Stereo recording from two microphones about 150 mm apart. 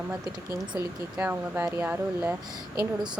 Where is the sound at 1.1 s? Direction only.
15° right (ahead or behind).